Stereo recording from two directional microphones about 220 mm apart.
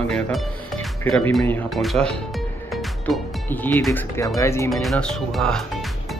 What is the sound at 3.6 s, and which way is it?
Speech, 10° left (ahead or behind).